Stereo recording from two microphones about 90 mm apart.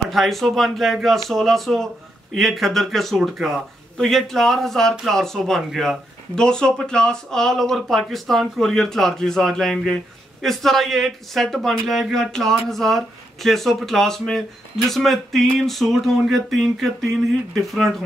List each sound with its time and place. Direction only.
0.1 s speech: centre (ahead or behind)